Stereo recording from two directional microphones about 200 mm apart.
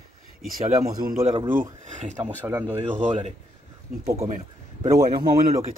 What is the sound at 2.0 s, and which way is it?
Speech, 35° right (ahead or behind).